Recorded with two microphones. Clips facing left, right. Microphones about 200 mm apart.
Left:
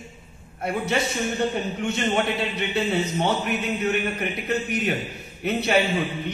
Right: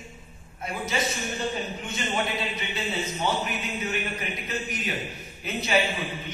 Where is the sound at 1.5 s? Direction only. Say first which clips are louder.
Left 6 dB; 60° left (ahead or behind).